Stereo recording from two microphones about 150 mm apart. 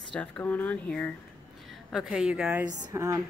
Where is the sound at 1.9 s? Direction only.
5° right (ahead or behind).